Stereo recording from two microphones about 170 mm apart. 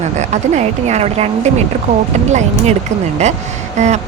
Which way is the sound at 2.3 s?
45° right (ahead or behind).